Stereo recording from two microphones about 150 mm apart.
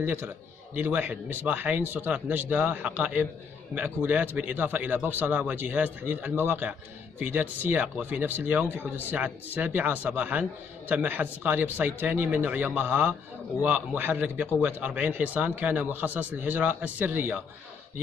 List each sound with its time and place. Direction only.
0.0 s speech: 15° right (ahead or behind)